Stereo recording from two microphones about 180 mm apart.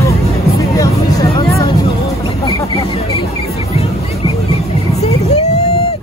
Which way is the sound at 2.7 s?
35° left (ahead or behind).